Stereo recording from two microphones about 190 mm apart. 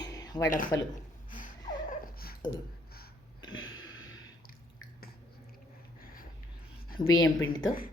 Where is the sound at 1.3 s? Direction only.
45° left (ahead or behind).